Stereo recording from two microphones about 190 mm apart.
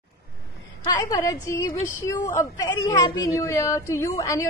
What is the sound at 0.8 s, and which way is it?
A woman's voice, 20° left (ahead or behind).